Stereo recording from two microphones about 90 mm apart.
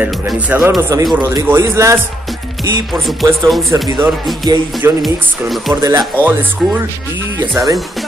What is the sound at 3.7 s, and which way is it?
Music, 40° right (ahead or behind).